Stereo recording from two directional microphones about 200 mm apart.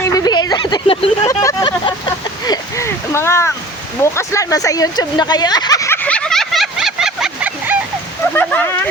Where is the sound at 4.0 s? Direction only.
15° left (ahead or behind); by 7.7 s 5° right (ahead or behind).